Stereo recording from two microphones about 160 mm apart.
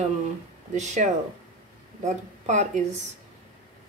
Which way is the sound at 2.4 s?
45° right (ahead or behind).